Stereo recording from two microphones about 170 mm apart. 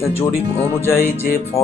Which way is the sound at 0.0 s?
15° left (ahead or behind).